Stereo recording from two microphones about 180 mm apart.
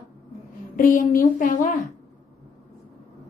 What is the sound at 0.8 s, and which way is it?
Speech, 50° left (ahead or behind).